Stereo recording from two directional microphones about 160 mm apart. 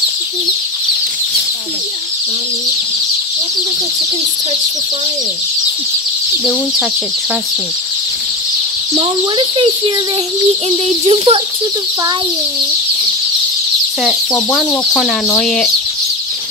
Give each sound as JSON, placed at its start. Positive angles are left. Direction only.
{"t": 8.9, "sound": "speech", "side_deg": -35}
{"t": 14.5, "sound": "speech", "side_deg": 0}